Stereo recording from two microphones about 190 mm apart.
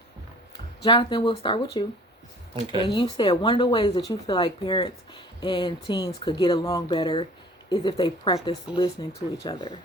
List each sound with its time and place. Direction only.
0.8 s speech: 25° left (ahead or behind)
2.8 s speech: 25° left (ahead or behind)